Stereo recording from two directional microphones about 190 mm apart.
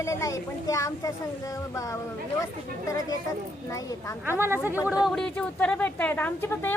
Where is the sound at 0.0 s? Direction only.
15° left (ahead or behind).